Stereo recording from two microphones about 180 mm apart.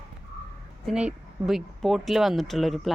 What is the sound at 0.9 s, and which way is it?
Speech, 5° right (ahead or behind).